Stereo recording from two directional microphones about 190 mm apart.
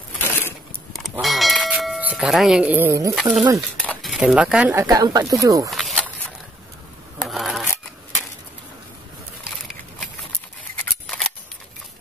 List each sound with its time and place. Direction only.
0.2 s a sound: 10° left (ahead or behind)
1.1 s tubular bells: centre (ahead or behind); by 3.2 s 15° right (ahead or behind)
3.2 s speech: 5° right (ahead or behind)
4.8 s speech: 20° right (ahead or behind)
5.7 s a sound: centre (ahead or behind)
7.2 s rub: centre (ahead or behind)
10.8 s scissors: 5° left (ahead or behind)